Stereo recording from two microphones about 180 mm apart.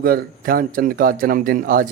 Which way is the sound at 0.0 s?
55° right (ahead or behind).